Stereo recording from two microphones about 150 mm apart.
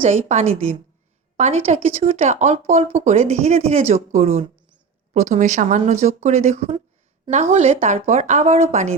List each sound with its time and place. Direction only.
0.0 s speech: 50° right (ahead or behind)